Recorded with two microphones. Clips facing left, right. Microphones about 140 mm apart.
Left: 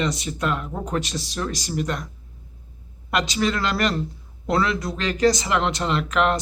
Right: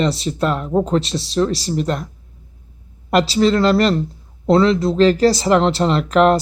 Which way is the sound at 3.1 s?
35° right (ahead or behind).